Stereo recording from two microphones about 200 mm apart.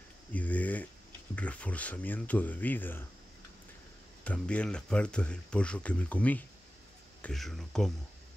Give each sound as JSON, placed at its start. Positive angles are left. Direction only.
{"t": 0.3, "sound": "a sound", "side_deg": 5}
{"t": 1.3, "sound": "speech", "side_deg": 5}
{"t": 4.2, "sound": "speech", "side_deg": 5}